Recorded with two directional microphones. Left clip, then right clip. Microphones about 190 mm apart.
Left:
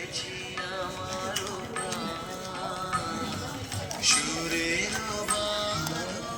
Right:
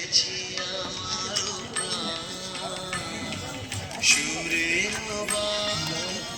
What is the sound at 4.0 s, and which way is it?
Music, 25° left (ahead or behind).